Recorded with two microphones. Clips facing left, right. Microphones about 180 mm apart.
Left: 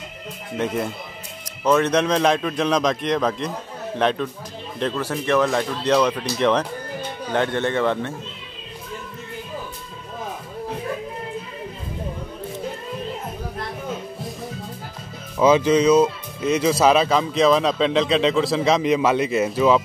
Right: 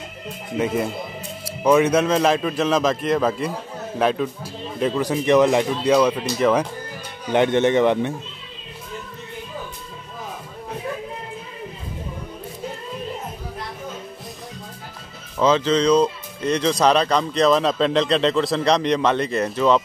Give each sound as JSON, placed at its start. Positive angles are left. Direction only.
{"t": 1.4, "sound": "speech", "side_deg": -10}
{"t": 7.3, "sound": "speech", "side_deg": -20}
{"t": 15.3, "sound": "speech", "side_deg": 10}